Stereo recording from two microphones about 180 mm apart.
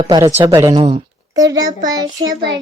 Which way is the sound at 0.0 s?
25° right (ahead or behind).